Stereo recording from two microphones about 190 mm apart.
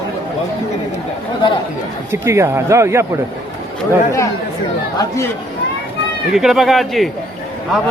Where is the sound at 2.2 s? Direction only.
15° right (ahead or behind).